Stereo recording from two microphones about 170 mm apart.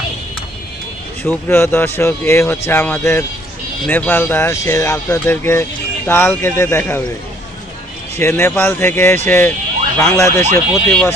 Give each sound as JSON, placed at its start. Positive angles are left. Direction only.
{"t": 1.2, "sound": "speech", "side_deg": 10}
{"t": 8.2, "sound": "speech", "side_deg": 15}